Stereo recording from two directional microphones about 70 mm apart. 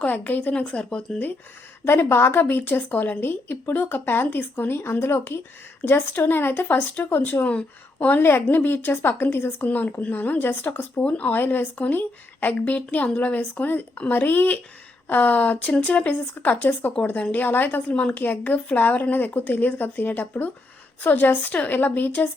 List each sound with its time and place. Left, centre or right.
0.0 s speech: left
1.8 s a woman's voice: left